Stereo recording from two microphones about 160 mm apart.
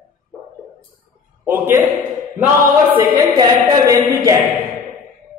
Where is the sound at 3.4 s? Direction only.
20° right (ahead or behind).